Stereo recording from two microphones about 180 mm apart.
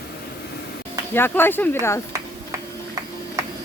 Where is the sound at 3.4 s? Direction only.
15° right (ahead or behind).